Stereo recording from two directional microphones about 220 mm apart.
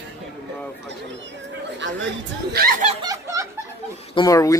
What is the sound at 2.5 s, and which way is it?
Snicker, 40° right (ahead or behind).